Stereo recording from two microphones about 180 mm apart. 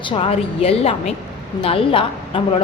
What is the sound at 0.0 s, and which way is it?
A woman's voice, 30° left (ahead or behind).